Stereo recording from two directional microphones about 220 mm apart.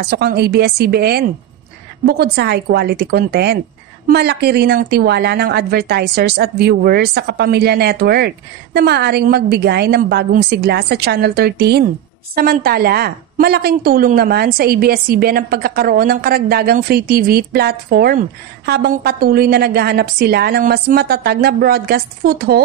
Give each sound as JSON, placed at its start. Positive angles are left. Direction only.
{"t": 0.0, "sound": "a woman's voice", "side_deg": -45}